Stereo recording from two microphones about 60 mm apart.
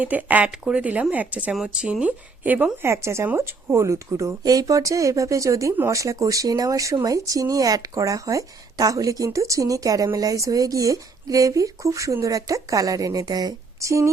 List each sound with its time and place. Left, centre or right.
0.0 s speech: right
0.5 s speech: centre
0.8 s speech: right
2.8 s speech: right
4.4 s speech: right
10.2 s speech: right